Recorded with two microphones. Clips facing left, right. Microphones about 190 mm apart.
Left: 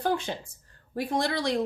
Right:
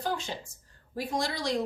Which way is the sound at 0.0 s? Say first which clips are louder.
Left 5 dB; 55° left (ahead or behind).